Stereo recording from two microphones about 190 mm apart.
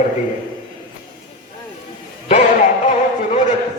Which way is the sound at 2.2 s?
35° left (ahead or behind).